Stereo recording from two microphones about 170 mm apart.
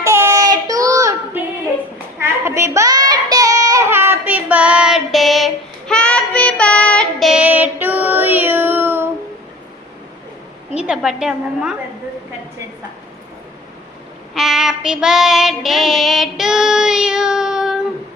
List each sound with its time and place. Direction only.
0.0 s child singing: 15° right (ahead or behind)
0.7 s female singing: 20° right (ahead or behind)
2.2 s child singing: 15° right (ahead or behind)
10.8 s a woman's voice: 5° right (ahead or behind)
14.3 s child singing: centre (ahead or behind)